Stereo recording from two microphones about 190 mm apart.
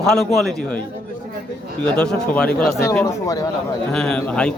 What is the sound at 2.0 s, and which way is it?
Speech, 5° left (ahead or behind).